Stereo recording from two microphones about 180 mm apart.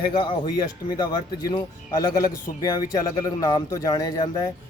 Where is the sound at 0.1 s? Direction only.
25° left (ahead or behind).